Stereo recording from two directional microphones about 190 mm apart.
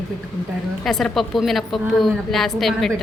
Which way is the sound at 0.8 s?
Centre (ahead or behind).